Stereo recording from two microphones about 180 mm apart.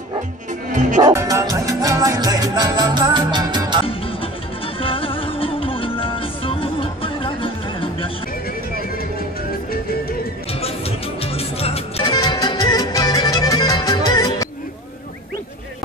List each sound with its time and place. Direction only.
0.7 s speech: 45° right (ahead or behind)
1.0 s music: 20° right (ahead or behind)
4.8 s music: 30° left (ahead or behind)
11.3 s music: 35° left (ahead or behind)
12.0 s music: 25° left (ahead or behind)